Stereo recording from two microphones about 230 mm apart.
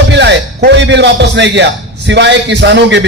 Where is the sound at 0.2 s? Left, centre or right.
Right.